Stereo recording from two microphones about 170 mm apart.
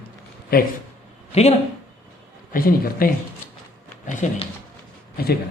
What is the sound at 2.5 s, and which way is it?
Speech, 60° left (ahead or behind).